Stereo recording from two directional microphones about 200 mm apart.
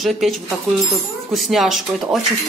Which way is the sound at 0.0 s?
Centre (ahead or behind).